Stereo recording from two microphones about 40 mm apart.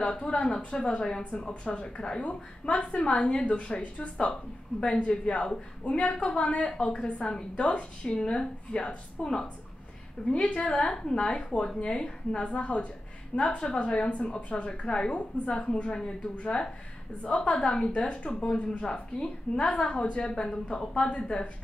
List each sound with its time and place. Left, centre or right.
0.1 s a woman's voice: left
4.3 s a woman's voice: left
10.9 s a woman's voice: centre